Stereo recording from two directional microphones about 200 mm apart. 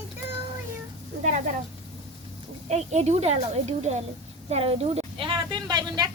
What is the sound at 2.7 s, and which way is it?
A woman's voice, 35° right (ahead or behind).